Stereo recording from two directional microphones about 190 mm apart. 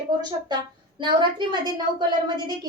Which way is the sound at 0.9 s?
25° right (ahead or behind).